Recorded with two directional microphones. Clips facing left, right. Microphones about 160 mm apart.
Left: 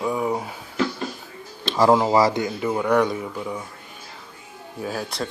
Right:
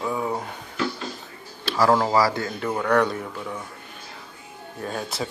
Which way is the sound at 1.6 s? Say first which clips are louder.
Left 2 dB; 20° left (ahead or behind).